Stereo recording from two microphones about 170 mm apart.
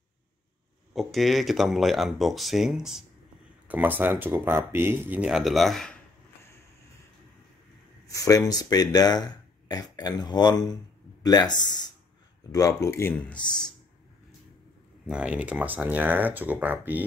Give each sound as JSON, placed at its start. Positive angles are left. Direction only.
{"t": 0.9, "sound": "speech", "side_deg": 0}
{"t": 8.1, "sound": "speech", "side_deg": 20}
{"t": 15.0, "sound": "speech", "side_deg": -5}